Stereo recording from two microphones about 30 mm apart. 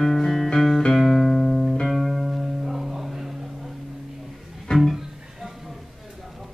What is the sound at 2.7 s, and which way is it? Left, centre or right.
Music, centre.